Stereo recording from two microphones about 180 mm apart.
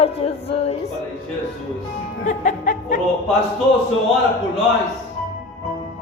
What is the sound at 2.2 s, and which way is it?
Music, 45° left (ahead or behind).